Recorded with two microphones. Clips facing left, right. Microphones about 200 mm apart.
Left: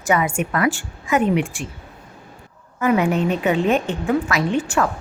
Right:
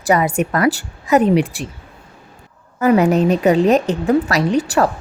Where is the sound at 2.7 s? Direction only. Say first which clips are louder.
Right 5 dB; 40° right (ahead or behind).